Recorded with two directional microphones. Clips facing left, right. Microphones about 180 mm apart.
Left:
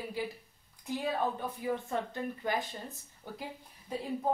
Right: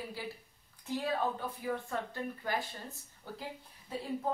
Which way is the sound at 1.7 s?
20° left (ahead or behind).